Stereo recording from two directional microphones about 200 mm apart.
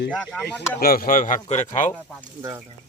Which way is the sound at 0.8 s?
50° left (ahead or behind).